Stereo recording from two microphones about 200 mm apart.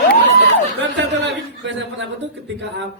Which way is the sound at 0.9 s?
65° right (ahead or behind).